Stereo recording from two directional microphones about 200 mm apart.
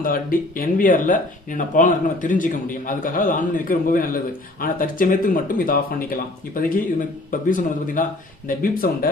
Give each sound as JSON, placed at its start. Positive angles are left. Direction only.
{"t": 0.0, "sound": "a man's voice", "side_deg": 45}